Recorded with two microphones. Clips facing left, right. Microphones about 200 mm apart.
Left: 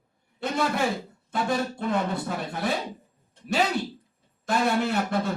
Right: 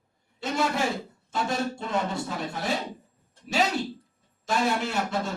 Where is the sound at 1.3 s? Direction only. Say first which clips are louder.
Left 2 dB; 55° left (ahead or behind).